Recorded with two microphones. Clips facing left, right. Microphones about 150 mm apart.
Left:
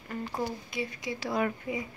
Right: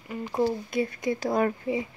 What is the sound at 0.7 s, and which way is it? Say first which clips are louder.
A woman's voice: right 8 dB; 50° right (ahead or behind).